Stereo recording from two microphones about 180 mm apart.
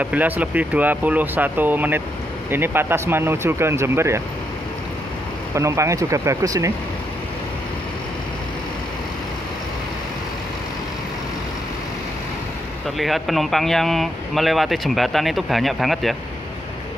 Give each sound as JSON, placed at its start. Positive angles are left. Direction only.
{"t": 0.0, "sound": "speech", "side_deg": -10}
{"t": 5.5, "sound": "speech", "side_deg": -15}
{"t": 12.9, "sound": "speech", "side_deg": 0}